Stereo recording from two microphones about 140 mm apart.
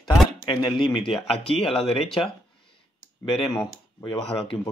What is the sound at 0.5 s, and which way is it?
Speech, 35° left (ahead or behind).